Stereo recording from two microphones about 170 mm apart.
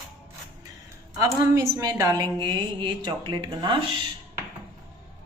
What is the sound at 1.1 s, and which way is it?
A woman's voice, 20° right (ahead or behind).